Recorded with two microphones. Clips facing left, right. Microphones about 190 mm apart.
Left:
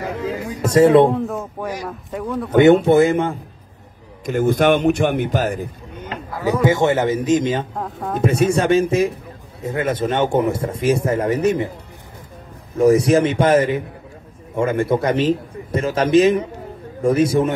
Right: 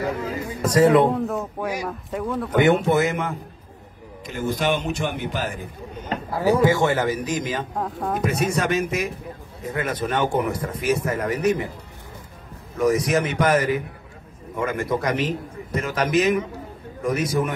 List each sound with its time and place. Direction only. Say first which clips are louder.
0.6 s speech: left 4 dB; 25° left (ahead or behind)
1.1 s speech: left 2 dB; centre (ahead or behind)
2.5 s speech: left 7 dB; 25° left (ahead or behind)
4.3 s a man's voice: left 8 dB; 55° left (ahead or behind)
6.0 s a sound: right 2 dB; 30° right (ahead or behind)
6.6 s speech: left 3 dB; 20° left (ahead or behind)
7.7 s speech: left 1 dB; 5° right (ahead or behind)
8.2 s speech: left 7 dB; 30° left (ahead or behind)
12.7 s speech: left 7 dB; 30° left (ahead or behind)